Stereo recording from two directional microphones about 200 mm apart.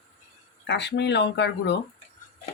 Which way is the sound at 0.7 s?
60° left (ahead or behind).